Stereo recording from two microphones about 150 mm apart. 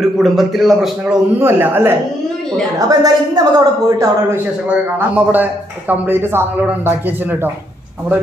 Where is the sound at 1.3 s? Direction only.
15° right (ahead or behind).